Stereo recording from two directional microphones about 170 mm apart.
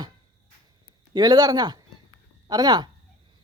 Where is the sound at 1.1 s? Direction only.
25° right (ahead or behind).